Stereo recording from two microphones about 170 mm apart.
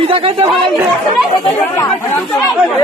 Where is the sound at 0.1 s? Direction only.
30° right (ahead or behind).